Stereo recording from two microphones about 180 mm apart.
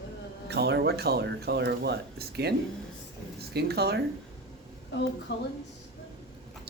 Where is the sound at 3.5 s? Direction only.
65° right (ahead or behind).